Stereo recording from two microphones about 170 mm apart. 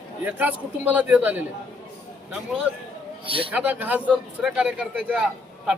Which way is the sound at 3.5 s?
10° right (ahead or behind).